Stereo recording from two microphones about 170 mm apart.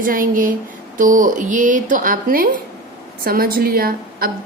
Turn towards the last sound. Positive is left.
turn(degrees=-60)  # may be behind; listen again after turning